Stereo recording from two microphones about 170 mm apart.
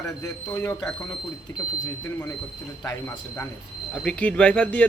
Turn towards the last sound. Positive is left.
turn(degrees=10)  # may be behind; listen again after turning